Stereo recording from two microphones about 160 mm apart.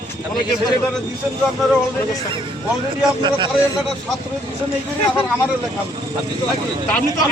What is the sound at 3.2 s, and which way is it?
Speech, 30° right (ahead or behind).